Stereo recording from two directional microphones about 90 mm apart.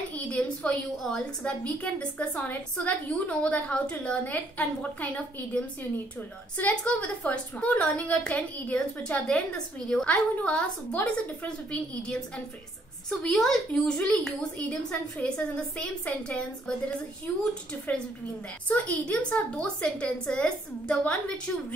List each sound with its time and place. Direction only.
0.1 s a woman's voice: 10° left (ahead or behind)
18.7 s a woman's voice: 15° left (ahead or behind)